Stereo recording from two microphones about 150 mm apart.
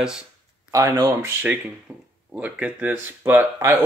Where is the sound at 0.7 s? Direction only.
20° right (ahead or behind).